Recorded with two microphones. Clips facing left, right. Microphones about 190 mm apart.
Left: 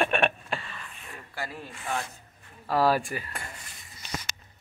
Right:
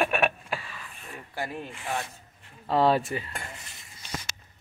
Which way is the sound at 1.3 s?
20° right (ahead or behind).